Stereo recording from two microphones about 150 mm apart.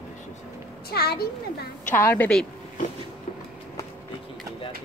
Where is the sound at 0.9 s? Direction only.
90° left.